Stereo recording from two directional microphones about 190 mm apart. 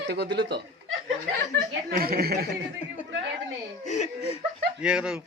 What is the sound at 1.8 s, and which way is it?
Speech, 50° right (ahead or behind).